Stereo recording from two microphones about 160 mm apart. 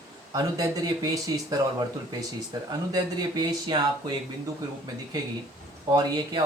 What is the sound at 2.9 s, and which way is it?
Speech, 25° right (ahead or behind).